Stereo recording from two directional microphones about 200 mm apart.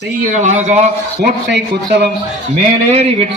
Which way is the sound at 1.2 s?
55° right (ahead or behind).